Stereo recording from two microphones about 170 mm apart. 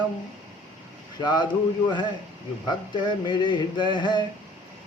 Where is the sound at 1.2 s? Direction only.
25° left (ahead or behind).